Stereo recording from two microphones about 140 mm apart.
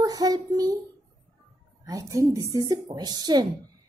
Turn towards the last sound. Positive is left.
turn(degrees=-30)  # may be behind; listen again after turning